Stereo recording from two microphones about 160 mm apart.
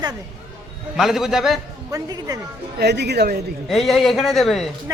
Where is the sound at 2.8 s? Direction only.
90° right.